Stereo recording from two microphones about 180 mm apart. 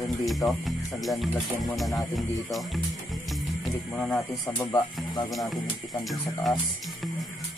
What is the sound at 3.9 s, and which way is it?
Speech, 5° left (ahead or behind).